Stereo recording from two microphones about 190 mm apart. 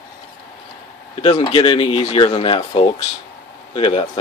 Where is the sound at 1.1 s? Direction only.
30° left (ahead or behind).